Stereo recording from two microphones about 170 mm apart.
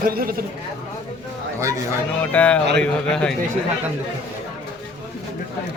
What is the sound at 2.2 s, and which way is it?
A man's voice, 10° left (ahead or behind).